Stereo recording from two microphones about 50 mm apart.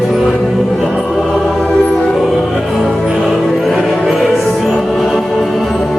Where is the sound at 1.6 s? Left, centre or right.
Centre.